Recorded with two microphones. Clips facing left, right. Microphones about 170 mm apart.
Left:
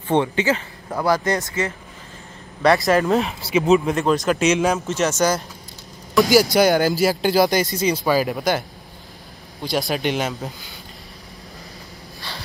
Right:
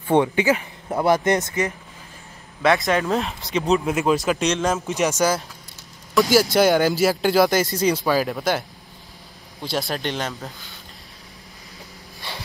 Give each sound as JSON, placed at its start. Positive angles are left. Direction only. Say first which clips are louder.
{"t": 0.1, "sound": "speech", "louder": "right 1 dB", "side_deg": -15}
{"t": 2.6, "sound": "speech", "louder": "left 3 dB", "side_deg": 0}
{"t": 4.7, "sound": "speech", "louder": "left 1 dB", "side_deg": -10}
{"t": 9.7, "sound": "speech", "louder": "left 4 dB", "side_deg": 0}